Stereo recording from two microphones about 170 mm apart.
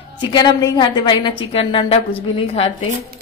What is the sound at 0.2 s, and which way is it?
A woman's voice, 25° left (ahead or behind).